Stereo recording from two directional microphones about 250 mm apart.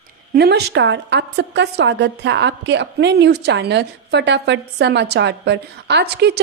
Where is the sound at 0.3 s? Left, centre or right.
Right.